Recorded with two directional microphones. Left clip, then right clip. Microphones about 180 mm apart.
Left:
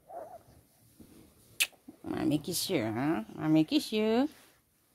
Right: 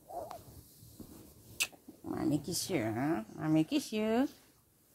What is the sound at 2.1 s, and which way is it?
Speech, 35° left (ahead or behind).